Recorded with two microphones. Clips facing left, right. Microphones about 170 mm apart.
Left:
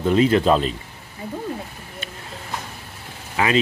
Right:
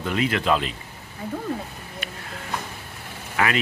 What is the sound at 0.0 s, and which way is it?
Speech, 30° left (ahead or behind).